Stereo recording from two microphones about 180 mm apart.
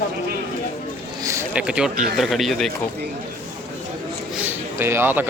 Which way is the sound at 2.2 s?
Centre (ahead or behind).